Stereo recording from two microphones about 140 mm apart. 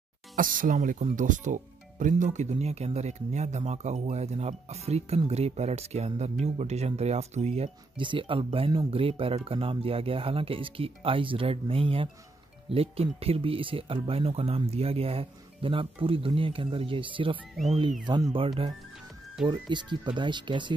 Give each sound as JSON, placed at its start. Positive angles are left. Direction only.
{"t": 0.4, "sound": "speech", "side_deg": -75}
{"t": 8.0, "sound": "speech", "side_deg": -35}